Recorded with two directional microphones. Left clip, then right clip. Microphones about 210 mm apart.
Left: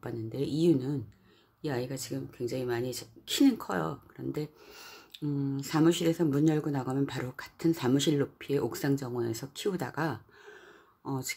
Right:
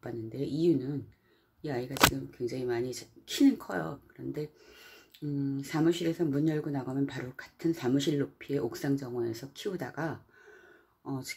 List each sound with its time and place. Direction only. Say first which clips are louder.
0.0 s speech: left 2 dB; 10° left (ahead or behind)